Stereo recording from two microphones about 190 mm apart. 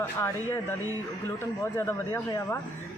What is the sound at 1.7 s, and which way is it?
Speech, 15° left (ahead or behind).